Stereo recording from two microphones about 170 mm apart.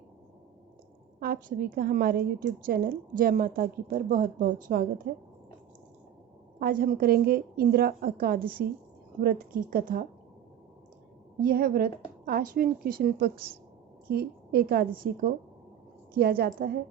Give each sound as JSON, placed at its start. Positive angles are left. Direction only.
{"t": 1.2, "sound": "a woman's voice", "side_deg": -60}
{"t": 6.6, "sound": "a woman's voice", "side_deg": -55}
{"t": 11.4, "sound": "a woman's voice", "side_deg": -60}